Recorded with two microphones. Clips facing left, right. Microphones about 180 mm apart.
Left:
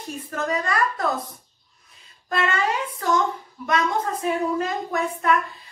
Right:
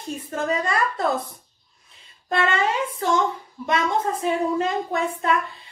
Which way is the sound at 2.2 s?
25° right (ahead or behind).